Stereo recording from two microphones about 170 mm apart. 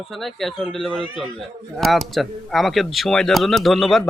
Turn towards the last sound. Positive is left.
turn(degrees=0)  # may be behind; listen again after turning